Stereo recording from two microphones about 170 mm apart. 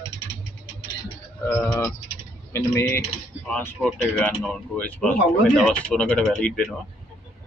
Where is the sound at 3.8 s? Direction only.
5° left (ahead or behind).